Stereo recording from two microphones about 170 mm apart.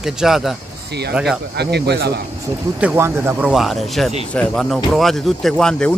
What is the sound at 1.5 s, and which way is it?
Speech, 75° right (ahead or behind).